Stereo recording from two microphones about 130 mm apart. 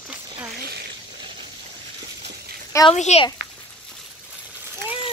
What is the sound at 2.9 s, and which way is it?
Speech, 60° left (ahead or behind).